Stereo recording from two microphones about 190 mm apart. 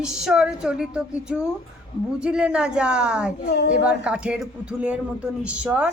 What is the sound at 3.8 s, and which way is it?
A woman's voice, 5° right (ahead or behind).